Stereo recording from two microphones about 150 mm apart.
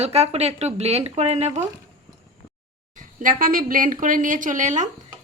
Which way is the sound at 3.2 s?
65° right (ahead or behind).